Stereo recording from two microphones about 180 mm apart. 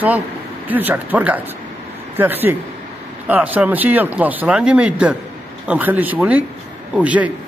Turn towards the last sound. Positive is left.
turn(degrees=-10)  # may be behind; listen again after turning